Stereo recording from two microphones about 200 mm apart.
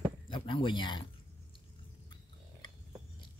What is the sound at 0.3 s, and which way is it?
Speech, 25° left (ahead or behind).